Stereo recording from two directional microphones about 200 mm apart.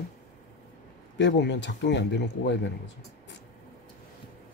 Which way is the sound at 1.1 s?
60° left (ahead or behind).